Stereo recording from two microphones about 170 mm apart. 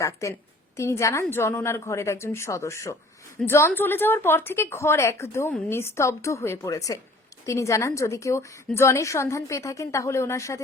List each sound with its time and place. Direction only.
0.0 s a woman's voice: 20° left (ahead or behind)